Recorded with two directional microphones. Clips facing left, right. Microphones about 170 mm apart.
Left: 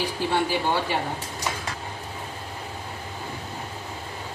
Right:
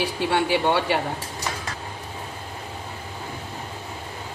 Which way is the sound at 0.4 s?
70° right (ahead or behind).